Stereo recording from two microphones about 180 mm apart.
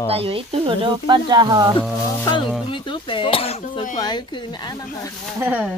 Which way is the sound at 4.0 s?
25° left (ahead or behind).